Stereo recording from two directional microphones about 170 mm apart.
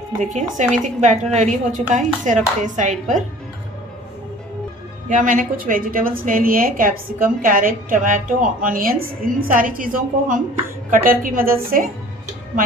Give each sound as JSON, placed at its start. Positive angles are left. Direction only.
{"t": 0.2, "sound": "speech", "side_deg": -45}
{"t": 5.1, "sound": "a woman's voice", "side_deg": -50}